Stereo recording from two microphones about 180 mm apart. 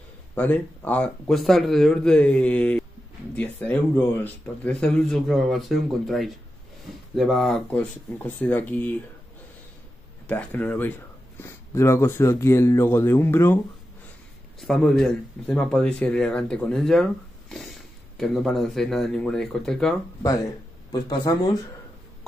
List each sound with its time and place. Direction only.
0.3 s speech: 10° left (ahead or behind)
10.2 s speech: 10° left (ahead or behind)
14.6 s speech: centre (ahead or behind)
20.9 s speech: 20° left (ahead or behind)